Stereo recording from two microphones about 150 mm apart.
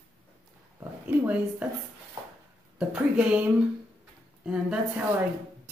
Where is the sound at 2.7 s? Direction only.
5° right (ahead or behind).